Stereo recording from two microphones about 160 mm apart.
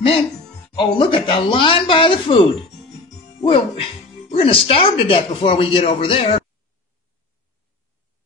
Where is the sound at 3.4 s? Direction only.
35° left (ahead or behind).